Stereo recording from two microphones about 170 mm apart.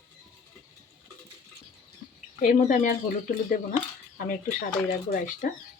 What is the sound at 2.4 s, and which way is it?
Speech, 50° left (ahead or behind).